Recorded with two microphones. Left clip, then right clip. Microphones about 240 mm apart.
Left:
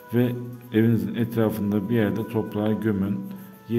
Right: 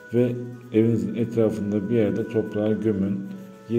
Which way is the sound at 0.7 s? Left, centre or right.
Left.